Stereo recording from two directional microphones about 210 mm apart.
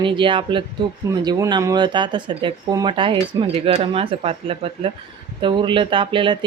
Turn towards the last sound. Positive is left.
turn(degrees=-25)  # may be behind; listen again after turning